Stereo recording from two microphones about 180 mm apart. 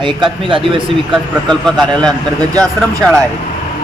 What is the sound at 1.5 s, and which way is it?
Speech, 5° left (ahead or behind).